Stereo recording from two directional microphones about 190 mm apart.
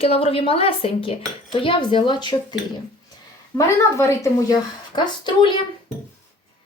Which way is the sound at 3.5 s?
15° left (ahead or behind).